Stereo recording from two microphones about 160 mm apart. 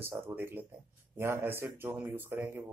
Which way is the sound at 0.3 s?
15° right (ahead or behind).